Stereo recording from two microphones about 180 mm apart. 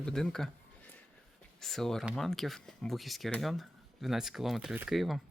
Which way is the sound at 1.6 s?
Centre (ahead or behind).